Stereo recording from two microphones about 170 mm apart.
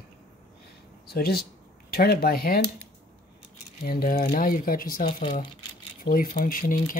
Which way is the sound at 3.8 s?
60° left (ahead or behind).